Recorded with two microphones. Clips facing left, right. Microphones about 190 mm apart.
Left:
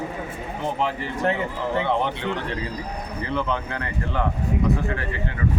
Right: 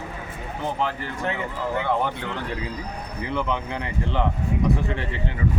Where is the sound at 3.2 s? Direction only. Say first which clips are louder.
Even; 15° right (ahead or behind).